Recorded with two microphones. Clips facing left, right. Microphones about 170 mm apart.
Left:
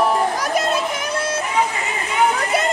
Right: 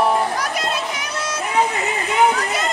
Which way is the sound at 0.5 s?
50° left (ahead or behind).